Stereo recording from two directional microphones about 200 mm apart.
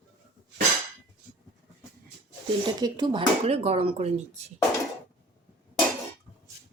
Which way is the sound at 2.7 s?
20° right (ahead or behind).